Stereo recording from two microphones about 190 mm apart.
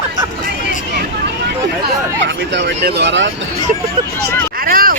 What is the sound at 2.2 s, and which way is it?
Speech, 65° right (ahead or behind).